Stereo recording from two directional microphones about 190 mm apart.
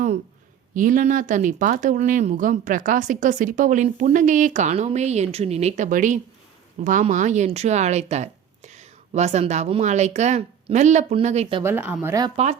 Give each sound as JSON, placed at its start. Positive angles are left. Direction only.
{"t": 0.7, "sound": "speech", "side_deg": -45}
{"t": 11.6, "sound": "speech", "side_deg": -10}